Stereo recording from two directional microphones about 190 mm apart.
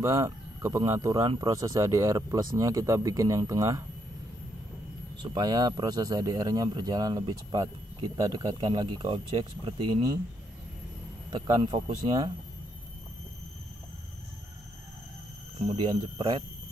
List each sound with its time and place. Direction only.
0.0 s speech: 15° right (ahead or behind)
5.2 s speech: 20° right (ahead or behind)
11.2 s speech: 25° right (ahead or behind)
15.6 s speech: 30° right (ahead or behind)